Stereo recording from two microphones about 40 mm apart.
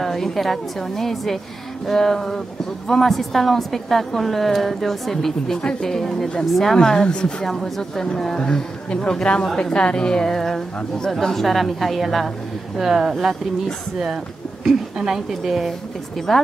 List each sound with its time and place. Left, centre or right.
0.0 s a woman's voice: centre; by 7.4 s left
7.4 s a man's voice: centre
12.7 s speech: centre
15.4 s a woman's voice: centre